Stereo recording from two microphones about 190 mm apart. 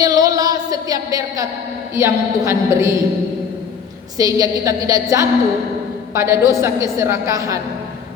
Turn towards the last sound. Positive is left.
turn(degrees=-15)  # may be behind; listen again after turning